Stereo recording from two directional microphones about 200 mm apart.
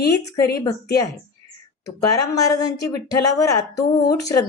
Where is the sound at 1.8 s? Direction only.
15° left (ahead or behind).